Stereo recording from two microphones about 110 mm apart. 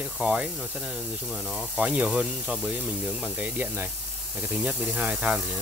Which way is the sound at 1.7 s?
10° right (ahead or behind).